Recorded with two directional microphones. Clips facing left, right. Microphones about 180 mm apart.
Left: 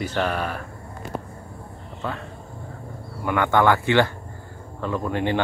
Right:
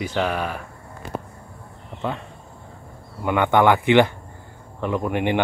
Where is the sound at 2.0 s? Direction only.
20° right (ahead or behind).